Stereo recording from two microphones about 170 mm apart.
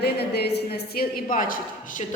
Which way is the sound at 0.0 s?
75° left (ahead or behind).